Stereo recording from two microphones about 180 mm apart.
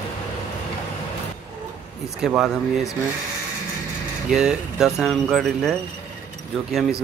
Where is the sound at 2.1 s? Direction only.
5° right (ahead or behind).